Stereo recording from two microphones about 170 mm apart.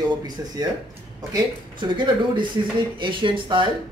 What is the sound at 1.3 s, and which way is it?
A man's voice, 30° right (ahead or behind).